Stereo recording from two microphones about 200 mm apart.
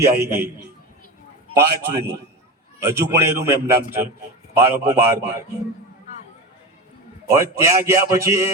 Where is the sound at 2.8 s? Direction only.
15° right (ahead or behind).